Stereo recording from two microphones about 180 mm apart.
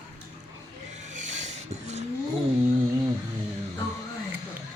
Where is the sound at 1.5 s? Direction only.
40° right (ahead or behind).